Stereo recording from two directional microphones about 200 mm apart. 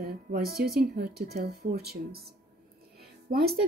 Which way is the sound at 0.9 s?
50° right (ahead or behind).